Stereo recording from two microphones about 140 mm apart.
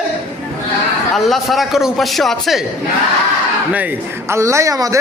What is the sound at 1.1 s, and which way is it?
A man's voice, centre (ahead or behind).